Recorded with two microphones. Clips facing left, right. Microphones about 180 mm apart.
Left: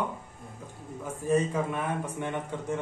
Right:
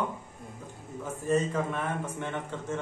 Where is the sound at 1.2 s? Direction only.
10° left (ahead or behind).